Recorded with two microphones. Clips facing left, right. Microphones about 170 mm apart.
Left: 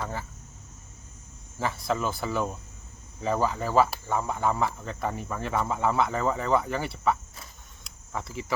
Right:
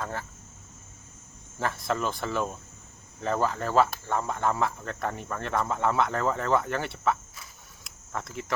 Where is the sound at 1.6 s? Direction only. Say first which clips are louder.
Left 1 dB; centre (ahead or behind).